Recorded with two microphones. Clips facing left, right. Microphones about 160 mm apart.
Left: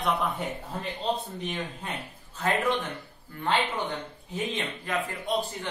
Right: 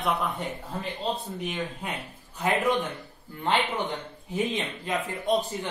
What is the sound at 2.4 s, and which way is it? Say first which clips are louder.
Speech: right 2 dB; 15° right (ahead or behind).